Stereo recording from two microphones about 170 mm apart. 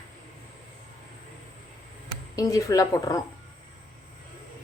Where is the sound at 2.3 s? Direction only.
20° left (ahead or behind).